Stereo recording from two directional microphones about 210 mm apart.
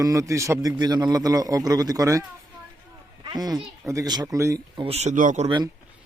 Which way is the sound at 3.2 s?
20° right (ahead or behind).